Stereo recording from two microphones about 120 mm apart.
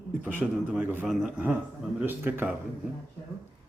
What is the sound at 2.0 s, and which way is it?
Speech, 15° right (ahead or behind).